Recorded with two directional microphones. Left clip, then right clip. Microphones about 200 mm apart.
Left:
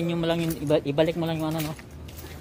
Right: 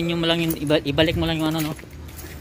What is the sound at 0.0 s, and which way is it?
Speech, centre (ahead or behind).